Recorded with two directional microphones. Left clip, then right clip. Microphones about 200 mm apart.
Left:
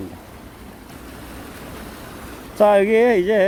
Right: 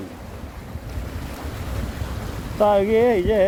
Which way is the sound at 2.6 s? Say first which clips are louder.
Left 3 dB; 30° left (ahead or behind).